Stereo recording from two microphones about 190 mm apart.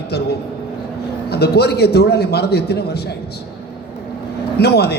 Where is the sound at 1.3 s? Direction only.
60° left (ahead or behind).